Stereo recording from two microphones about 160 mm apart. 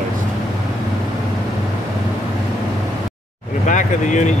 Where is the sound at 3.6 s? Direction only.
50° left (ahead or behind).